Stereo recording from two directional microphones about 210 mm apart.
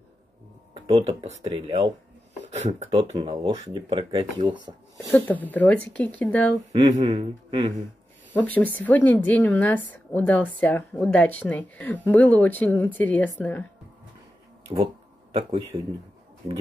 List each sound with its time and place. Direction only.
0.7 s speech: 25° right (ahead or behind)
2.4 s speech: 35° right (ahead or behind)
3.3 s speech: 20° right (ahead or behind)
4.9 s speech: 10° left (ahead or behind)
6.7 s speech: 20° right (ahead or behind)
8.3 s speech: 5° left (ahead or behind)
15.3 s speech: 25° right (ahead or behind)